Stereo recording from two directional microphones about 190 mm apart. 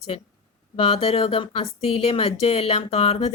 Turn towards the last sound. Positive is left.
turn(degrees=30)  # may be behind; listen again after turning